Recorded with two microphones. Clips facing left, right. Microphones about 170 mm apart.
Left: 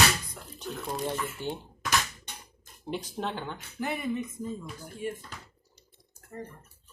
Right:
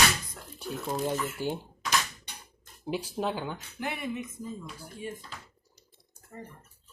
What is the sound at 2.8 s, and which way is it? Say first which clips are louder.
Speech: right 3 dB; 5° right (ahead or behind).